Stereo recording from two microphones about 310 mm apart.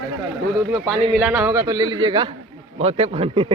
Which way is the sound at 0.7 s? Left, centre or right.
Centre.